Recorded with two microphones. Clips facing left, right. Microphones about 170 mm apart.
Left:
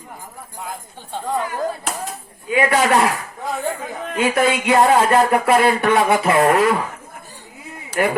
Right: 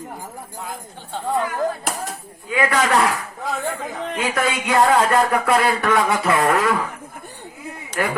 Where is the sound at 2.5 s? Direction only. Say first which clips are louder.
Left 3 dB; 25° left (ahead or behind).